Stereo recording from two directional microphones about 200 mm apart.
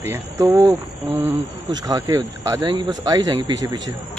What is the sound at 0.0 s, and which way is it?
Speech, 15° right (ahead or behind).